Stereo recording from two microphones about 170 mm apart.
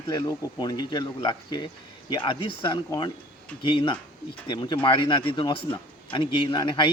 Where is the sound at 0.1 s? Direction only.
25° left (ahead or behind).